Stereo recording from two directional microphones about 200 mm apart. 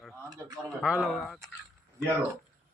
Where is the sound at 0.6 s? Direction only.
5° right (ahead or behind).